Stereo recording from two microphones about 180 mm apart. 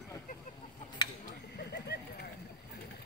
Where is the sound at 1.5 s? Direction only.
65° left (ahead or behind).